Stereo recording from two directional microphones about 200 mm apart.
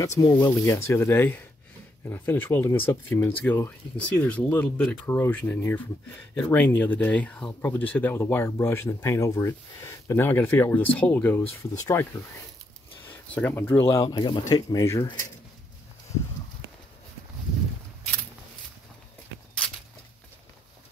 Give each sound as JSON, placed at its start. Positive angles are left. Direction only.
{"t": 0.2, "sound": "speech", "side_deg": 15}
{"t": 13.0, "sound": "a sound", "side_deg": 10}
{"t": 13.6, "sound": "speech", "side_deg": 10}